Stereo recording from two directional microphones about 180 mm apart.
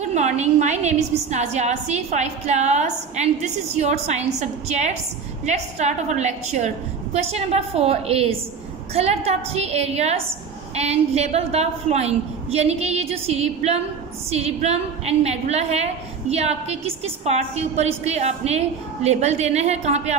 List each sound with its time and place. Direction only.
0.0 s a woman's voice: 40° right (ahead or behind)